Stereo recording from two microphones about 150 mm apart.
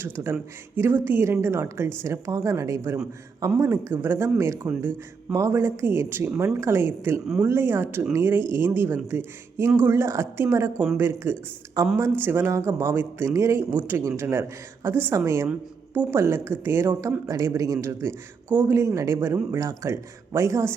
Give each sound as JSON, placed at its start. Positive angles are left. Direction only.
{"t": 0.0, "sound": "a man's voice", "side_deg": -15}